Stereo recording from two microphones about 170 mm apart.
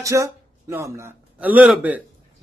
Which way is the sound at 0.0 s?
20° right (ahead or behind).